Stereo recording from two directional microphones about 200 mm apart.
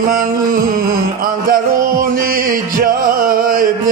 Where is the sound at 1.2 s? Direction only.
45° right (ahead or behind).